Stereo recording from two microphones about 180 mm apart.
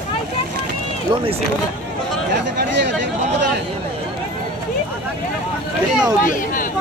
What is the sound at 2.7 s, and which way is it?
Speech, 75° right (ahead or behind).